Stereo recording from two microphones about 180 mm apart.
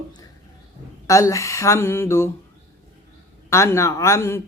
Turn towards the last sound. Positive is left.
turn(degrees=15)  # may be behind; listen again after turning